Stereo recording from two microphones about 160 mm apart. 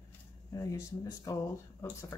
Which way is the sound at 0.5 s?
20° left (ahead or behind).